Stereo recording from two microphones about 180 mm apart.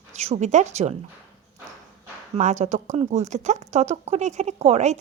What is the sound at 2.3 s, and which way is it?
Speech, 40° right (ahead or behind).